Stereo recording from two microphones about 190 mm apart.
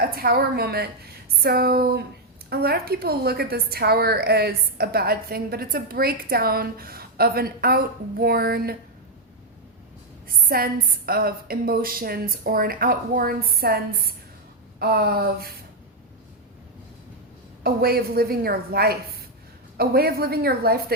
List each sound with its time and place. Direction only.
0.0 s a woman's voice: 50° right (ahead or behind)
10.2 s a woman's voice: 50° right (ahead or behind)
17.6 s a woman's voice: 55° right (ahead or behind)